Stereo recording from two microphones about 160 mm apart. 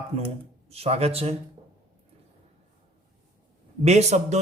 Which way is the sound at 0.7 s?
40° right (ahead or behind).